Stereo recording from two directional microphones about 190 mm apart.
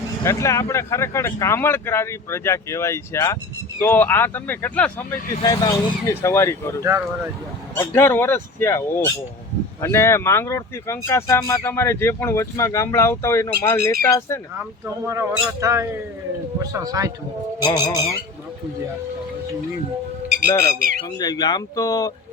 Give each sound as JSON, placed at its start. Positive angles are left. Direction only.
{"t": 0.3, "sound": "speech", "side_deg": 15}
{"t": 5.4, "sound": "speech", "side_deg": 20}
{"t": 7.8, "sound": "speech", "side_deg": 10}
{"t": 14.5, "sound": "speech", "side_deg": -10}
{"t": 17.7, "sound": "speech", "side_deg": 15}
{"t": 20.6, "sound": "speech", "side_deg": -50}
{"t": 21.2, "sound": "speech", "side_deg": 20}